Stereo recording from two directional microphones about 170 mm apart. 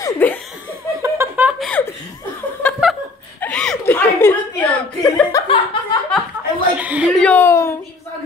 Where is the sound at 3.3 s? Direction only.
5° left (ahead or behind).